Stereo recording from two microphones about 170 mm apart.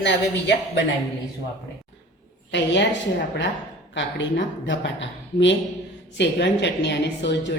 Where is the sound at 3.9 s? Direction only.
90° left.